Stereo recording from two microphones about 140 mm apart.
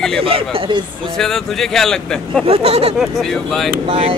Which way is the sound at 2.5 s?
45° right (ahead or behind).